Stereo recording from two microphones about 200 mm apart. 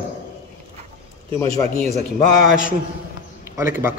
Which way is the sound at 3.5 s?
15° right (ahead or behind).